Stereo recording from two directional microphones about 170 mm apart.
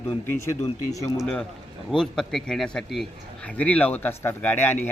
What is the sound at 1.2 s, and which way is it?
A man's voice, 5° left (ahead or behind).